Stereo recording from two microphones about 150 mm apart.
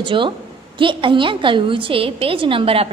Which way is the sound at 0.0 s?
35° right (ahead or behind).